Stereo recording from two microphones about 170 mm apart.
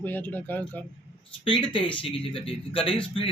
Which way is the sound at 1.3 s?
30° left (ahead or behind).